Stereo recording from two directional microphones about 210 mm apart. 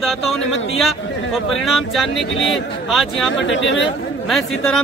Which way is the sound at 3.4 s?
60° left (ahead or behind).